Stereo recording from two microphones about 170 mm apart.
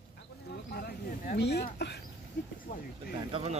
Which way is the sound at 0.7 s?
65° left (ahead or behind).